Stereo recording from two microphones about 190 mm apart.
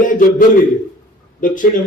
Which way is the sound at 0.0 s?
45° left (ahead or behind).